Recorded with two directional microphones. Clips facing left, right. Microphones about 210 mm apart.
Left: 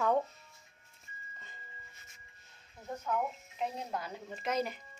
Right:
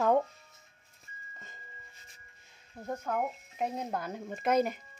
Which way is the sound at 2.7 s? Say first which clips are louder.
Right 2 dB; 55° right (ahead or behind).